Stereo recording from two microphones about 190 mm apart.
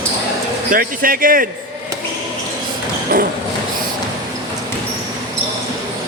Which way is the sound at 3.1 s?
50° right (ahead or behind).